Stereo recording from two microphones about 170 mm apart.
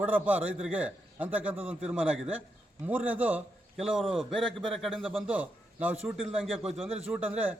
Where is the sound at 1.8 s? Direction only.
5° right (ahead or behind).